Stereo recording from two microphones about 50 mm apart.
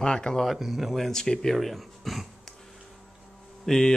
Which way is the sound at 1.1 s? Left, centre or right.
Centre.